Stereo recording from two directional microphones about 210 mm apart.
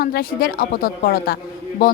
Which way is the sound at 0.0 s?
45° left (ahead or behind).